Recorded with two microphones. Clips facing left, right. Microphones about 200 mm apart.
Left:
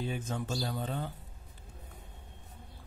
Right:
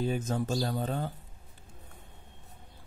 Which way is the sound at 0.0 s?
40° right (ahead or behind).